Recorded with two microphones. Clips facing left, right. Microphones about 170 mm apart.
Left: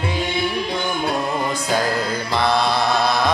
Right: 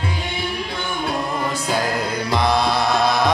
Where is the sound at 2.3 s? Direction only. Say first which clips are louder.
Right 1 dB; 15° right (ahead or behind).